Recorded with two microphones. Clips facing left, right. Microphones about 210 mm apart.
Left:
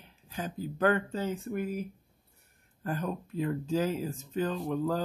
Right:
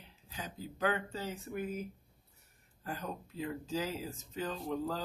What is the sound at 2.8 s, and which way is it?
Speech, 50° left (ahead or behind).